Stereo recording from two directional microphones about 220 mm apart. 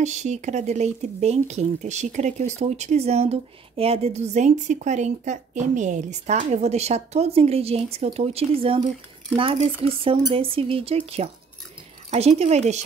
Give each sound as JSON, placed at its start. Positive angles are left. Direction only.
{"t": 0.0, "sound": "speech", "side_deg": -30}